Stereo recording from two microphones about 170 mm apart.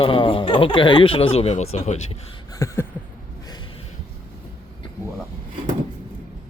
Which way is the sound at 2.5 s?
15° left (ahead or behind).